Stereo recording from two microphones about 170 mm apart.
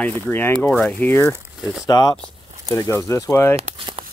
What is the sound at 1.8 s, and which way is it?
Speech, 20° left (ahead or behind).